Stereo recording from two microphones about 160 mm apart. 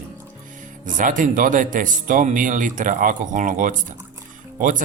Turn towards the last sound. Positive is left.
turn(degrees=-55)  # may be behind; listen again after turning